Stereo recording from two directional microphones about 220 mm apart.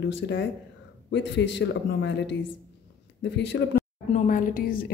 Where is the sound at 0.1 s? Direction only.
55° left (ahead or behind).